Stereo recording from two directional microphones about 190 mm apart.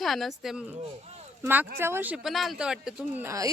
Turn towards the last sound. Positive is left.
turn(degrees=-15)  # may be behind; listen again after turning